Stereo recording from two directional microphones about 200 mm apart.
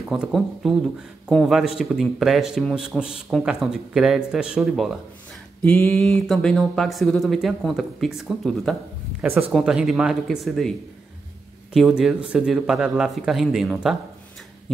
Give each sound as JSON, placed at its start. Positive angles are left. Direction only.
{"t": 0.1, "sound": "speech", "side_deg": 0}
{"t": 11.7, "sound": "speech", "side_deg": 0}